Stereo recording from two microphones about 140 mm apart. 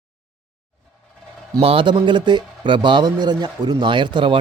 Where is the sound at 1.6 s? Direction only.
35° right (ahead or behind).